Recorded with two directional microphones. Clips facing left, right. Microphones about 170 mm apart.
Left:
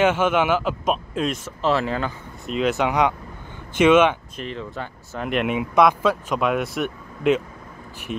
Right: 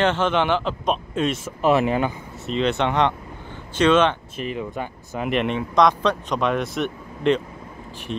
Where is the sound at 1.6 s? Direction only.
15° right (ahead or behind).